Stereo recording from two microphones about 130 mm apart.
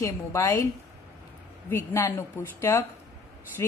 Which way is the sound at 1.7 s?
20° left (ahead or behind).